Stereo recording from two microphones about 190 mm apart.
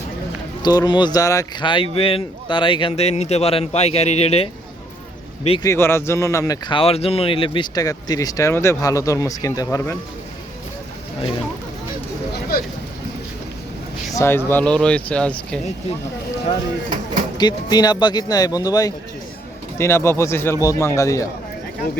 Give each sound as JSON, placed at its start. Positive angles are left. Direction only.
{"t": 0.6, "sound": "speech", "side_deg": 20}
{"t": 5.6, "sound": "speech", "side_deg": 15}
{"t": 12.3, "sound": "a sound", "side_deg": 55}
{"t": 14.1, "sound": "speech", "side_deg": 15}
{"t": 17.3, "sound": "speech", "side_deg": 20}